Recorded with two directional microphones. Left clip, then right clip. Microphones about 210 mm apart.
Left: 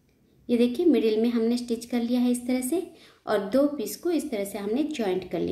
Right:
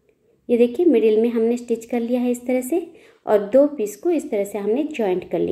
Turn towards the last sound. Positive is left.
turn(degrees=-5)  # may be behind; listen again after turning